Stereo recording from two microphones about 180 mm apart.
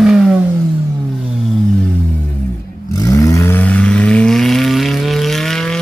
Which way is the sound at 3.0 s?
20° left (ahead or behind).